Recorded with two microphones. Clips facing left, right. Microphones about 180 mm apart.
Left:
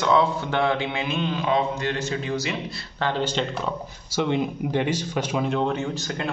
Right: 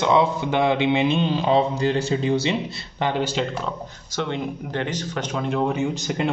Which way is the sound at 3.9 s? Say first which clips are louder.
Left 6 dB; 10° left (ahead or behind).